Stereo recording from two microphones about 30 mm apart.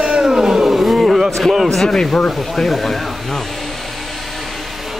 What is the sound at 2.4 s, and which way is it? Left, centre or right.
Speech, centre.